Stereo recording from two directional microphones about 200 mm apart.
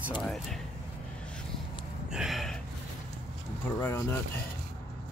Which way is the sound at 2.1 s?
Centre (ahead or behind).